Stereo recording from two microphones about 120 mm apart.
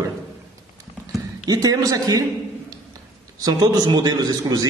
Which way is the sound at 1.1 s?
30° right (ahead or behind).